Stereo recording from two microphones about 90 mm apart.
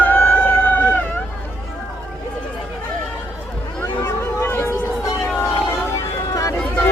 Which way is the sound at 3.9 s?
25° left (ahead or behind).